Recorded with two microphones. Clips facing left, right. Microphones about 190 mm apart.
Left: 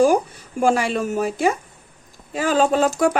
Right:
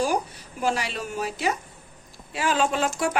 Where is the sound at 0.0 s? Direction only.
45° left (ahead or behind).